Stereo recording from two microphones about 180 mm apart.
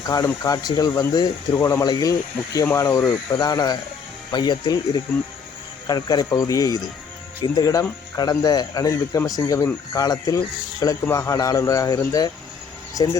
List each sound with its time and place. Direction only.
0.1 s speech: 20° left (ahead or behind)
5.9 s speech: 20° left (ahead or behind)